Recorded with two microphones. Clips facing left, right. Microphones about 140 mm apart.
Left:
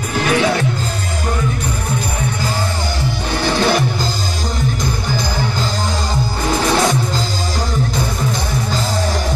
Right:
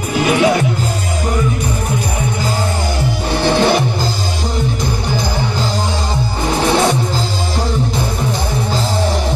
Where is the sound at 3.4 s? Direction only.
25° right (ahead or behind).